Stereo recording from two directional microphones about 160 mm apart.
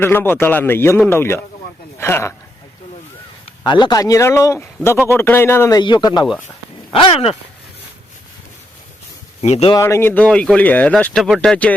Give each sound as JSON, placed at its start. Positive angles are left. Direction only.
{"t": 0.0, "sound": "speech", "side_deg": 15}
{"t": 3.6, "sound": "speech", "side_deg": 30}
{"t": 9.4, "sound": "speech", "side_deg": 40}
{"t": 9.7, "sound": "speech", "side_deg": 15}